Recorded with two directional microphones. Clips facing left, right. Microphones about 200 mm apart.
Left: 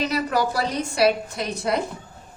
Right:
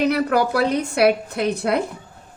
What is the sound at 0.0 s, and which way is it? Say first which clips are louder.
A woman's voice: right 5 dB; 60° right (ahead or behind).